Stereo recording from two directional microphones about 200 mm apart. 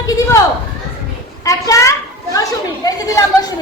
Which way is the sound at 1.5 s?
15° left (ahead or behind).